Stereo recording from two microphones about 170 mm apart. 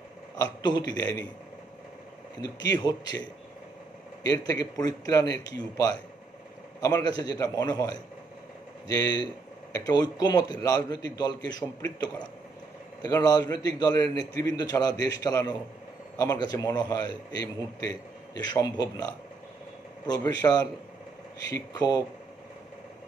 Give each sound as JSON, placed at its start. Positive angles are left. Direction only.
{"t": 0.4, "sound": "a man's voice", "side_deg": 25}
{"t": 2.4, "sound": "speech", "side_deg": 25}
{"t": 4.3, "sound": "speech", "side_deg": 20}
{"t": 6.8, "sound": "speech", "side_deg": 20}
{"t": 13.0, "sound": "speech", "side_deg": 20}